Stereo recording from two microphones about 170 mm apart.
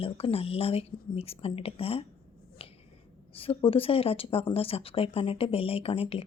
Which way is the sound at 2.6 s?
35° left (ahead or behind).